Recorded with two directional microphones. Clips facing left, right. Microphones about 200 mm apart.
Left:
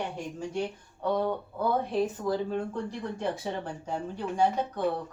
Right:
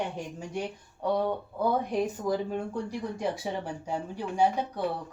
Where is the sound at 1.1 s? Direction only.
10° right (ahead or behind).